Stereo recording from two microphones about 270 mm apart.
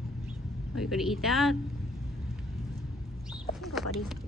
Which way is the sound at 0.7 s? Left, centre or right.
Centre.